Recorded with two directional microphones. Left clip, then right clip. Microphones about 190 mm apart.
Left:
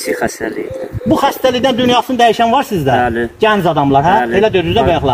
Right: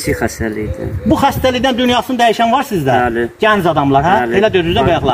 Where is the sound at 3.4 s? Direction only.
15° right (ahead or behind).